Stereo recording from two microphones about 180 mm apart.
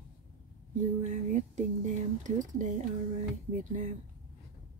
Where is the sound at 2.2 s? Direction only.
45° right (ahead or behind).